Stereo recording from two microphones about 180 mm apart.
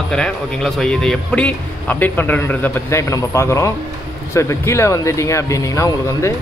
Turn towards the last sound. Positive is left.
turn(degrees=15)  # may be behind; listen again after turning